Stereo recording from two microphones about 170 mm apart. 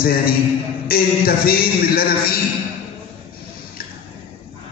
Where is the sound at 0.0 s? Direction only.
60° left (ahead or behind).